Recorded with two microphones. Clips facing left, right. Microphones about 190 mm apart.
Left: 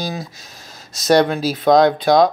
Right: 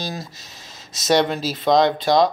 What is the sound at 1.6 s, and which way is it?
Speech, 50° left (ahead or behind).